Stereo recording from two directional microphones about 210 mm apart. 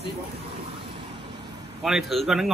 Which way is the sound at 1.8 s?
Centre (ahead or behind).